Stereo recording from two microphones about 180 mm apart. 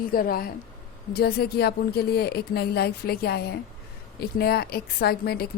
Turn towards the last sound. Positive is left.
turn(degrees=60)  # may be behind; listen again after turning